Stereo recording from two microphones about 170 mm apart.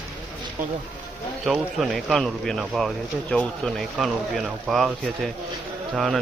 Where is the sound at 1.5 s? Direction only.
Centre (ahead or behind).